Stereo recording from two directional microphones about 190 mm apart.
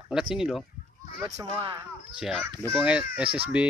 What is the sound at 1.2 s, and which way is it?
Speech, 15° right (ahead or behind).